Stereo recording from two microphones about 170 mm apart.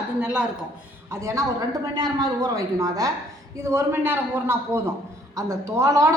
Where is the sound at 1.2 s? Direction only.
20° right (ahead or behind).